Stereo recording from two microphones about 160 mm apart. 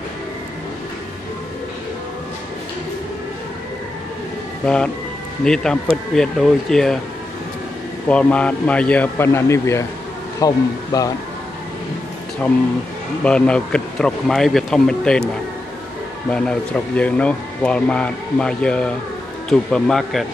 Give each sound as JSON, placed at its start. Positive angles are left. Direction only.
{"t": 4.6, "sound": "speech", "side_deg": 5}
{"t": 8.1, "sound": "speech", "side_deg": 5}
{"t": 13.2, "sound": "speech", "side_deg": 5}
{"t": 16.3, "sound": "speech", "side_deg": 5}